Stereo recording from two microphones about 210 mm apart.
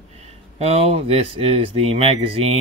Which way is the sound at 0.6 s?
30° right (ahead or behind).